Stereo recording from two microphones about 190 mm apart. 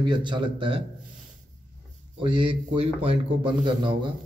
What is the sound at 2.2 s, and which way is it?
A man's voice, 25° right (ahead or behind).